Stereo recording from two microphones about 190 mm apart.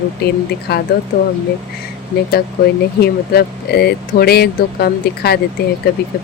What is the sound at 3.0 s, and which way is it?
Speech, 55° left (ahead or behind).